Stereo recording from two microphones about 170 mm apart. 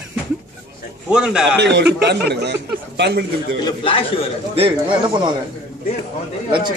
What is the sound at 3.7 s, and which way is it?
Speech, 30° left (ahead or behind).